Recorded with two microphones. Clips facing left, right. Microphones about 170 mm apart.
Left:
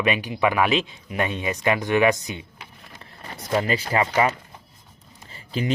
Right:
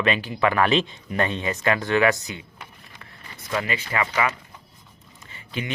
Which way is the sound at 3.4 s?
35° left (ahead or behind).